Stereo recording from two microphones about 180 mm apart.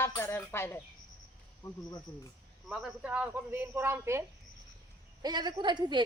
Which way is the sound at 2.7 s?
Centre (ahead or behind).